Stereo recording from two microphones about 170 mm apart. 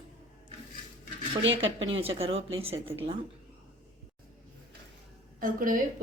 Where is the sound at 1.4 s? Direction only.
90° right.